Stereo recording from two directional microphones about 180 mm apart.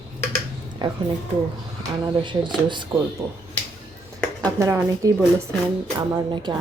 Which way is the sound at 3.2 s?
15° right (ahead or behind).